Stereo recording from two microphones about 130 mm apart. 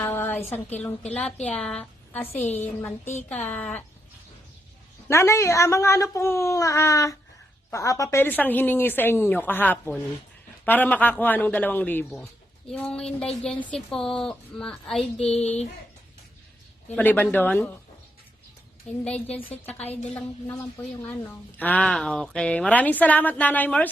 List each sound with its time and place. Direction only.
0.0 s speech: 15° left (ahead or behind)
5.0 s a woman's voice: 20° left (ahead or behind); by 15.0 s 5° left (ahead or behind)
15.4 s speech: 55° left (ahead or behind)
16.9 s speech: 15° left (ahead or behind)
19.0 s speech: 10° left (ahead or behind)
19.8 s a woman's voice: 55° left (ahead or behind)
20.1 s speech: 10° left (ahead or behind)